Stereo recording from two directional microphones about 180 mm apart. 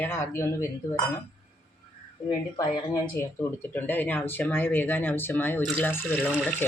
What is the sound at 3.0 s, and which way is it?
Speech, 15° left (ahead or behind).